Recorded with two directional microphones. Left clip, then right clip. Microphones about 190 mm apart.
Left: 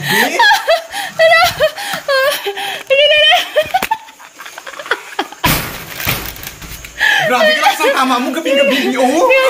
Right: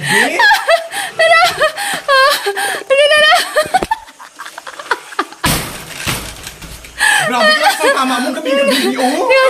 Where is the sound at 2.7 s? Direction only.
60° right (ahead or behind).